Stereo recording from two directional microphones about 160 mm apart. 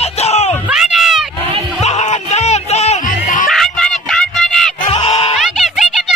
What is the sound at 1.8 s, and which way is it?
Music, 45° left (ahead or behind).